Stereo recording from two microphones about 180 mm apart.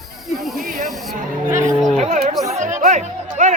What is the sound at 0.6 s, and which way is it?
Snake, 50° right (ahead or behind).